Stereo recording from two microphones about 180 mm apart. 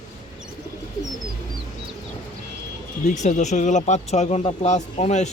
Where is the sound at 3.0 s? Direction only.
40° left (ahead or behind).